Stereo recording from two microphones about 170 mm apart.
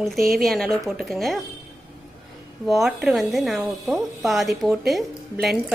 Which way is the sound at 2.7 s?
Centre (ahead or behind).